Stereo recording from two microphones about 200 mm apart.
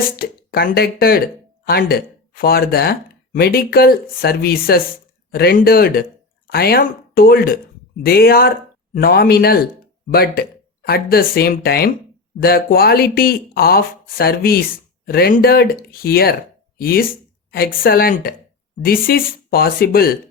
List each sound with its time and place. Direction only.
0.2 s speech: 50° left (ahead or behind)